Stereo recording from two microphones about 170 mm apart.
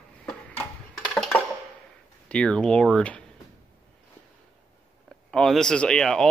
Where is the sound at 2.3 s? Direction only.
5° left (ahead or behind).